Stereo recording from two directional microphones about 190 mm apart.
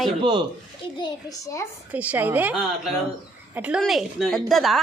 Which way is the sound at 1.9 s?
10° right (ahead or behind).